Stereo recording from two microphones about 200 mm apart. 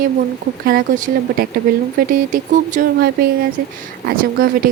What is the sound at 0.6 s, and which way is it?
Speech, 45° right (ahead or behind).